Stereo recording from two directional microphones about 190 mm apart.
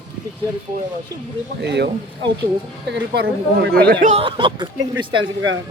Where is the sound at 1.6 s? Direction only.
65° right (ahead or behind).